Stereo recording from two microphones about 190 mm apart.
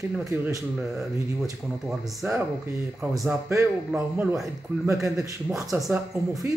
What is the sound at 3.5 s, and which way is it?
A man's voice, 15° right (ahead or behind).